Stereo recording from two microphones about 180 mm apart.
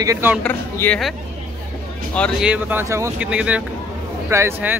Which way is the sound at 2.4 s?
10° right (ahead or behind).